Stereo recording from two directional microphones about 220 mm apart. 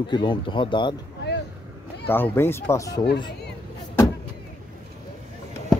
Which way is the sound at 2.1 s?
10° left (ahead or behind).